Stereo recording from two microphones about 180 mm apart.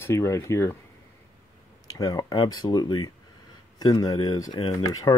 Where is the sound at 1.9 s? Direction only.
20° left (ahead or behind).